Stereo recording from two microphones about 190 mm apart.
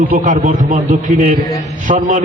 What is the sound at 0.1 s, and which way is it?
A man's voice, 40° right (ahead or behind).